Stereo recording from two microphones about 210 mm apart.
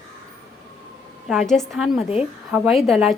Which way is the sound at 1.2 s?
Centre (ahead or behind).